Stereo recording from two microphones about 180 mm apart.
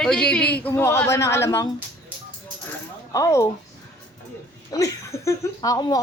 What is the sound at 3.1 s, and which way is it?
Speech, 15° left (ahead or behind).